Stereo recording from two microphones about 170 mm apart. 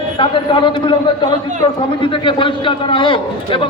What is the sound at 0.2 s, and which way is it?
A man's voice, 30° left (ahead or behind).